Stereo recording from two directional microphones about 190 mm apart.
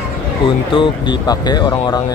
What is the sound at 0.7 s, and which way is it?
Speech, 25° left (ahead or behind).